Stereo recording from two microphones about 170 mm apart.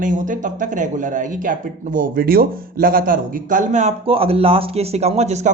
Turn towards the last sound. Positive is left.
turn(degrees=-40)  # may be behind; listen again after turning